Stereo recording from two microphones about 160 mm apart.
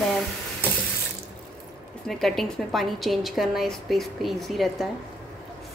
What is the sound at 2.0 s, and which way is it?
A woman's voice, centre (ahead or behind).